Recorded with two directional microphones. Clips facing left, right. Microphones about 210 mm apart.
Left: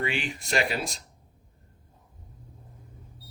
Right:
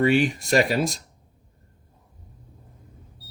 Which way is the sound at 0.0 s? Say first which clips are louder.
Right 11 dB; 45° right (ahead or behind).